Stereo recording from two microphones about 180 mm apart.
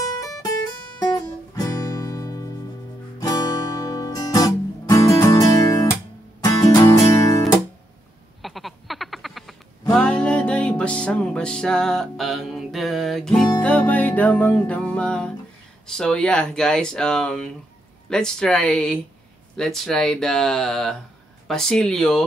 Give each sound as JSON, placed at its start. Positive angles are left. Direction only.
{"t": 0.0, "sound": "music", "side_deg": 20}
{"t": 3.2, "sound": "guitar", "side_deg": 20}
{"t": 6.4, "sound": "music", "side_deg": 20}
{"t": 8.4, "sound": "music", "side_deg": 0}
{"t": 15.9, "sound": "speech", "side_deg": 5}